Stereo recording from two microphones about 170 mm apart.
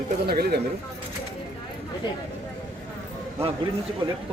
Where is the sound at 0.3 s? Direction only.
70° right (ahead or behind).